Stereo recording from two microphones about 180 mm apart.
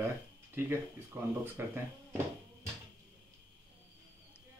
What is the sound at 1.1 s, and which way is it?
Speech, 15° right (ahead or behind).